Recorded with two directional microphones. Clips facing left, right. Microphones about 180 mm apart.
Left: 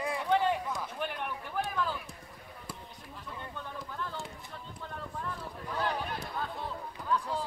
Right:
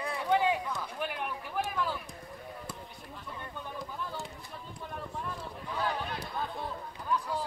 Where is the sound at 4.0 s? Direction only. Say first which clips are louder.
Left 1 dB; 10° right (ahead or behind).